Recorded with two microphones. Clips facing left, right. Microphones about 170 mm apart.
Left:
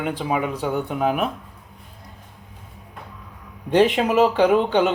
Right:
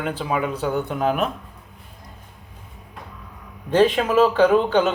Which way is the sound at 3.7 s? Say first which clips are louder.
Even; 20° left (ahead or behind).